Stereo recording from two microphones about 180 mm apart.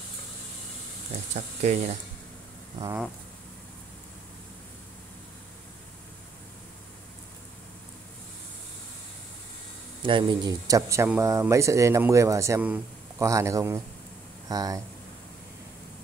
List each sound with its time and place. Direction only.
1.3 s speech: 40° right (ahead or behind)
10.0 s speech: 25° right (ahead or behind)